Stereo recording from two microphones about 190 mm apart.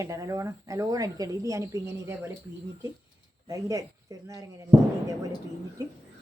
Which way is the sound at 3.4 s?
15° right (ahead or behind).